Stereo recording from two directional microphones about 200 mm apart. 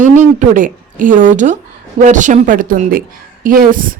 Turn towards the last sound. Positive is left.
turn(degrees=-45)  # may be behind; listen again after turning